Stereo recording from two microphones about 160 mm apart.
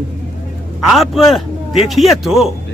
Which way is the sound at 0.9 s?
Centre (ahead or behind).